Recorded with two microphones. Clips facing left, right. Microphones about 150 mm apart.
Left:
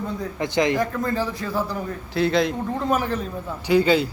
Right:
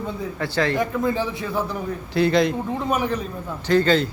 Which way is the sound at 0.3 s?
20° left (ahead or behind).